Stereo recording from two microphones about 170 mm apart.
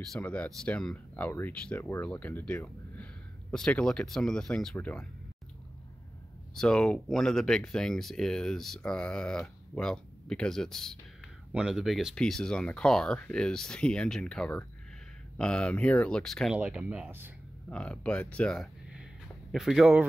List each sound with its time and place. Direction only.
0.1 s speech: 10° left (ahead or behind)
6.5 s speech: 5° left (ahead or behind)
17.6 s speech: 5° left (ahead or behind)